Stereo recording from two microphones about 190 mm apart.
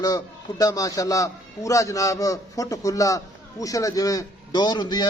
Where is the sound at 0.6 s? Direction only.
20° left (ahead or behind).